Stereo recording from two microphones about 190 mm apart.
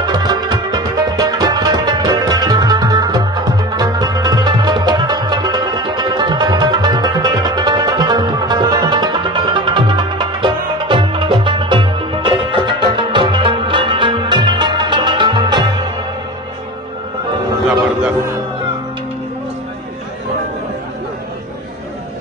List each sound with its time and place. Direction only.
0.0 s music: 20° right (ahead or behind)